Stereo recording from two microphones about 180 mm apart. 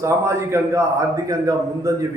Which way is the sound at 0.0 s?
15° right (ahead or behind).